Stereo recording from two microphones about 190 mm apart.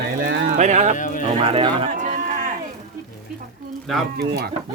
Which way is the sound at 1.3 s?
25° right (ahead or behind).